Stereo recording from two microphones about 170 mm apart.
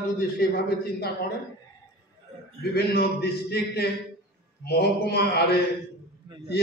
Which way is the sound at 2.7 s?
70° left (ahead or behind).